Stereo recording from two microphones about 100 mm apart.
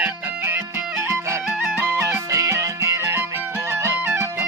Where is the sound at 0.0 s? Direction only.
25° right (ahead or behind).